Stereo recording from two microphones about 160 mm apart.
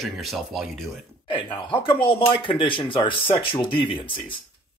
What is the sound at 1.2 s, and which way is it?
Speech, 30° left (ahead or behind).